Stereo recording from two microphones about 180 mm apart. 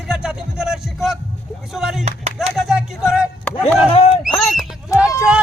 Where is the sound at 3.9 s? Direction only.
30° left (ahead or behind).